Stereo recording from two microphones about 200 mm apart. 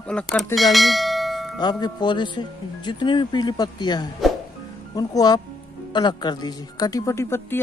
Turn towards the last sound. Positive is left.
turn(degrees=10)  # may be behind; listen again after turning